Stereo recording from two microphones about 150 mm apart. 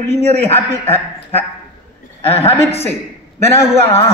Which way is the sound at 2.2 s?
40° left (ahead or behind).